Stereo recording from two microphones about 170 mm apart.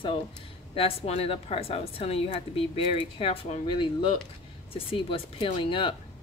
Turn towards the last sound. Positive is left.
turn(degrees=30)  # may be behind; listen again after turning